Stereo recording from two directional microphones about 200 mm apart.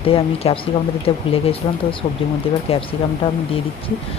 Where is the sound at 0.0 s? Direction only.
30° left (ahead or behind).